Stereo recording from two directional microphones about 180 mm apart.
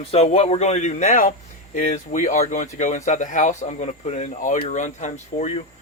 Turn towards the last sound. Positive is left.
turn(degrees=40)  # may be behind; listen again after turning